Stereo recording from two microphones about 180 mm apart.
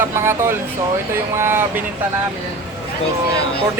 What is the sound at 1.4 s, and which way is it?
Speech, 15° right (ahead or behind).